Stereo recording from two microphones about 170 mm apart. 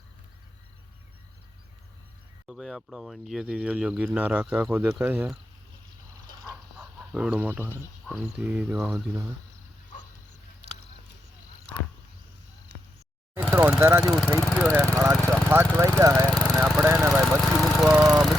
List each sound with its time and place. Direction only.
2.5 s speech: centre (ahead or behind)
6.7 s fowl: 5° right (ahead or behind)
7.6 s speech: 10° left (ahead or behind)
8.1 s speech: 10° right (ahead or behind)
13.3 s vehicle: 15° right (ahead or behind)
14.0 s speech: 5° right (ahead or behind)
14.4 s vehicle: 5° left (ahead or behind)
15.2 s speech: 5° left (ahead or behind)
15.4 s speech: 15° right (ahead or behind)
16.8 s a sound: 15° right (ahead or behind)
17.1 s vehicle: centre (ahead or behind)
17.6 s speech: 5° right (ahead or behind)